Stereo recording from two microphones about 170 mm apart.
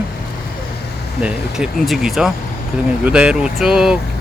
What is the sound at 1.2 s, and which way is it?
Speech, 5° right (ahead or behind).